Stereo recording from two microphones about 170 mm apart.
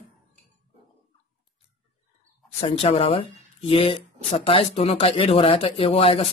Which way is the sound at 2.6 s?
35° left (ahead or behind).